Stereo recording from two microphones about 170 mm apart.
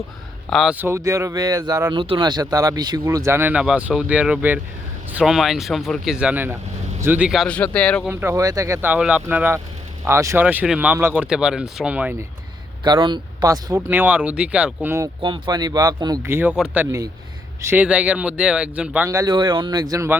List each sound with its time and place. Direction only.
0.5 s speech: centre (ahead or behind)
0.8 s speech: 15° right (ahead or behind); by 8.0 s 5° left (ahead or behind)
8.0 s speech: 15° right (ahead or behind)
12.8 s speech: 25° right (ahead or behind)
15.2 s speech: 25° right (ahead or behind); by 19.0 s 5° right (ahead or behind)
19.0 s speech: 20° right (ahead or behind)